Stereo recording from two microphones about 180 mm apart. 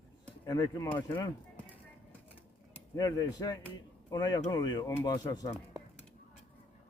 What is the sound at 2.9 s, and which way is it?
Speech, 20° left (ahead or behind).